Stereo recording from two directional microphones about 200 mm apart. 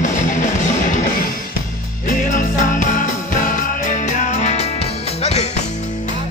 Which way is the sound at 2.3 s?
40° left (ahead or behind).